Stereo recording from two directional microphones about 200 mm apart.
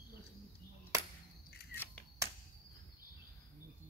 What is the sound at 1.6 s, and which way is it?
Scissors, 50° left (ahead or behind).